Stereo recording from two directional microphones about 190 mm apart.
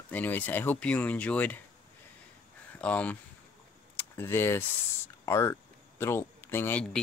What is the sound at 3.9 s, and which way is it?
Keys jangling, 10° left (ahead or behind).